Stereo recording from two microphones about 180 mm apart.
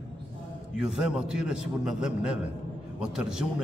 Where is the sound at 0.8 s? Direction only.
5° right (ahead or behind).